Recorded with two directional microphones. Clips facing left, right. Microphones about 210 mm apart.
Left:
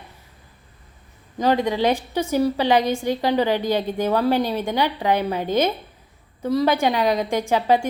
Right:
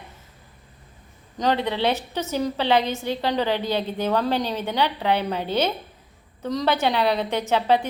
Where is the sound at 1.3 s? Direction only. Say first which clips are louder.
Left 3 dB; 10° left (ahead or behind).